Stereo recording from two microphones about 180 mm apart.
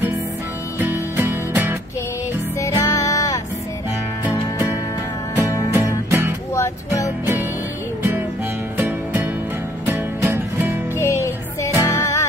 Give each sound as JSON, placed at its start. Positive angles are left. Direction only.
{"t": 0.7, "sound": "music", "side_deg": -15}
{"t": 2.6, "sound": "music", "side_deg": 15}
{"t": 5.7, "sound": "music", "side_deg": -15}
{"t": 6.5, "sound": "music", "side_deg": 15}
{"t": 8.7, "sound": "music", "side_deg": -10}
{"t": 11.0, "sound": "music", "side_deg": 15}